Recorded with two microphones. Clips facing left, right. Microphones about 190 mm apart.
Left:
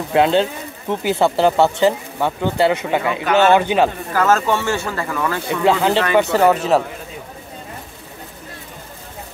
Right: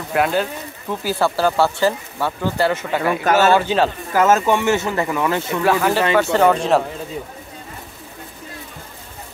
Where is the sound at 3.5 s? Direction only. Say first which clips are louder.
Left 2 dB; 15° left (ahead or behind).